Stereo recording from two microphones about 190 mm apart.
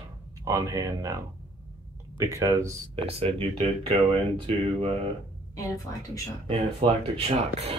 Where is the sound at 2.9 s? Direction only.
30° right (ahead or behind).